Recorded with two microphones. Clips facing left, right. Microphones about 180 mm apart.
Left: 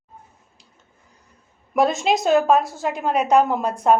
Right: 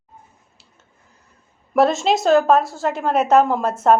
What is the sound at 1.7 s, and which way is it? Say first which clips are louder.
A woman's voice: right 2 dB; centre (ahead or behind).